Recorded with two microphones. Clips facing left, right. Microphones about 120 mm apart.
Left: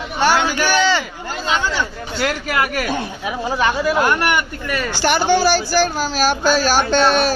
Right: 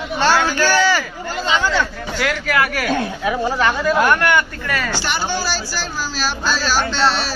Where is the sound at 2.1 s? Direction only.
25° left (ahead or behind).